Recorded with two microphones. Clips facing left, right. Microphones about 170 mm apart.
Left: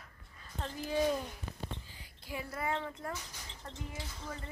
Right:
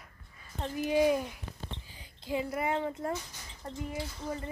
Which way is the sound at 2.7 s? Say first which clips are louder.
Right 6 dB; 30° right (ahead or behind).